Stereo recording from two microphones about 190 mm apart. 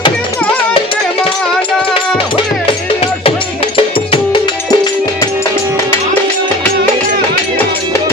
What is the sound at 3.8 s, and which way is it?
Music, 25° left (ahead or behind).